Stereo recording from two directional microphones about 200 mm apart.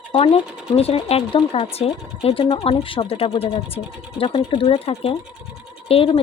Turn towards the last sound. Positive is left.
turn(degrees=30)  # may be behind; listen again after turning